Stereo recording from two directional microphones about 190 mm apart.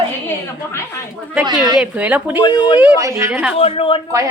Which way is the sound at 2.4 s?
20° left (ahead or behind).